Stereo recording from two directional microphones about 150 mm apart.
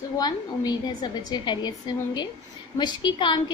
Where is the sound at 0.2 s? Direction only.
25° left (ahead or behind).